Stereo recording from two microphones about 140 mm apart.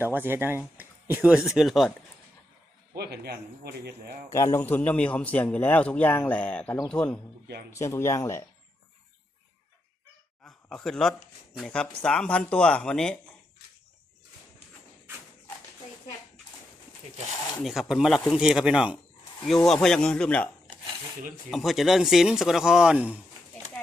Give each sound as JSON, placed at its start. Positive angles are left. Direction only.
{"t": 0.0, "sound": "speech", "side_deg": -15}
{"t": 4.3, "sound": "a man's voice", "side_deg": 20}
{"t": 7.7, "sound": "speech", "side_deg": 20}
{"t": 10.4, "sound": "speech", "side_deg": 5}
{"t": 17.6, "sound": "speech", "side_deg": 0}
{"t": 21.5, "sound": "speech", "side_deg": 0}